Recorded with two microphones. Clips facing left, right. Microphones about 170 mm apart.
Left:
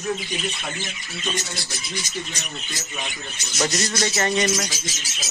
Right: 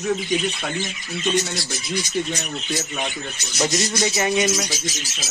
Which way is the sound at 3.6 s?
10° right (ahead or behind).